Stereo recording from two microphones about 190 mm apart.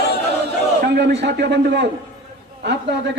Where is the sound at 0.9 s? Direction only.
60° right (ahead or behind).